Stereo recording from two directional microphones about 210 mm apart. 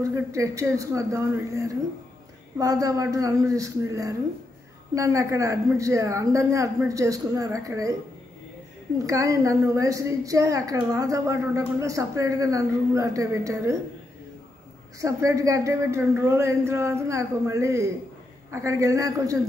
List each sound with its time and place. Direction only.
0.0 s a woman's voice: 15° right (ahead or behind)
15.0 s a woman's voice: 15° right (ahead or behind)